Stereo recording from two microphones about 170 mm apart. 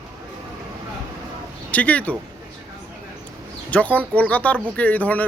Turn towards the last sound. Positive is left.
turn(degrees=10)  # may be behind; listen again after turning